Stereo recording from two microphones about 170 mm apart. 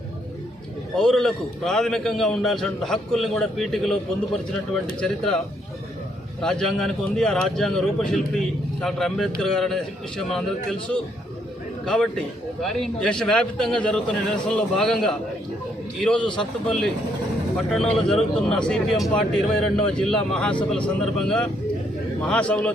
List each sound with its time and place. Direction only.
0.9 s a man's voice: 5° left (ahead or behind)
4.9 s a man's voice: 5° left (ahead or behind)
6.4 s a man's voice: centre (ahead or behind)